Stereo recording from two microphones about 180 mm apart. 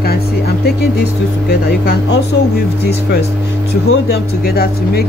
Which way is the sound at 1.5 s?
65° left (ahead or behind).